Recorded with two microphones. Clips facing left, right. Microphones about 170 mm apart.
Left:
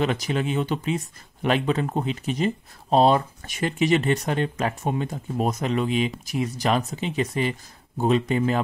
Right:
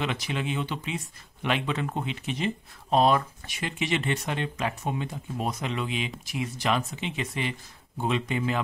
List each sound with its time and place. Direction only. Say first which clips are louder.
0.0 s speech: left 6 dB; 40° left (ahead or behind)
3.4 s speech: left 8 dB; 45° left (ahead or behind)